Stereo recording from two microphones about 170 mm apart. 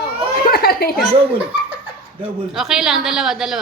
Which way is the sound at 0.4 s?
60° left (ahead or behind).